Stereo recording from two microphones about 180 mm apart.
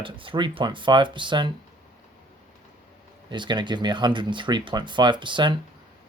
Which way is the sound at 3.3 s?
25° right (ahead or behind).